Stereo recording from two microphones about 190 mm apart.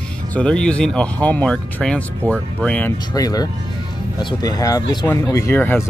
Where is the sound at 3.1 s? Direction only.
20° left (ahead or behind).